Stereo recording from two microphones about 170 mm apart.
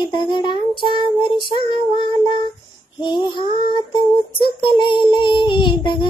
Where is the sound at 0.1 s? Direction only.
30° left (ahead or behind).